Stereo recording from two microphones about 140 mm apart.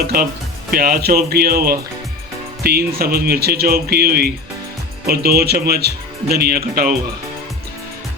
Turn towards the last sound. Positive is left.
turn(degrees=-90)